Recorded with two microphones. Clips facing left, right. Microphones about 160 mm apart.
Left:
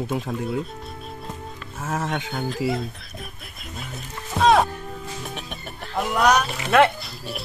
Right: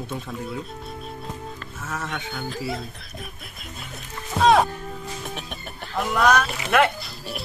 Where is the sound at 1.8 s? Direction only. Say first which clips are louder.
Left 6 dB; 50° left (ahead or behind).